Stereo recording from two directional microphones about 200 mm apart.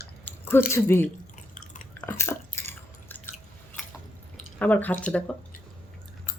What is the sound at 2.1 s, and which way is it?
Chewing, 10° left (ahead or behind).